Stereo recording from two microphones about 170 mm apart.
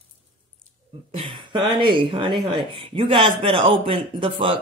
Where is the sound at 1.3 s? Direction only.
30° right (ahead or behind).